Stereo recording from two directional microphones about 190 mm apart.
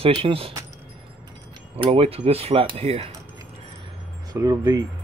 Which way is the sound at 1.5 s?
30° right (ahead or behind).